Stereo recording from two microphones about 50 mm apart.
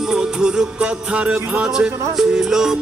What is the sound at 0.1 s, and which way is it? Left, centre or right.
Music, centre.